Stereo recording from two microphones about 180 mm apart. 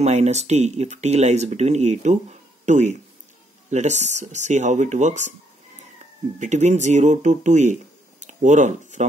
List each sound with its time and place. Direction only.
0.0 s speech: 40° right (ahead or behind)
6.4 s speech: 40° right (ahead or behind)
8.2 s a sound: 45° right (ahead or behind)